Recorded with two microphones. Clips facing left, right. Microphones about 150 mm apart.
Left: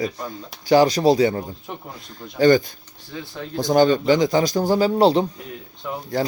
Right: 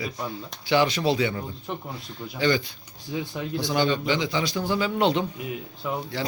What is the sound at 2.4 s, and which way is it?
Speech, 45° left (ahead or behind).